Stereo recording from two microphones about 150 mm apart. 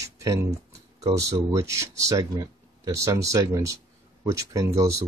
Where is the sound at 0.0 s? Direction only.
20° right (ahead or behind).